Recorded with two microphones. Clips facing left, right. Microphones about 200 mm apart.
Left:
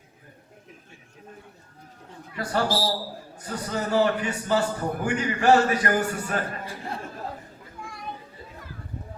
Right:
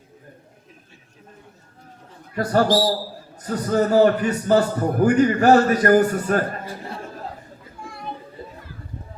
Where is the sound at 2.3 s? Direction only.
40° right (ahead or behind).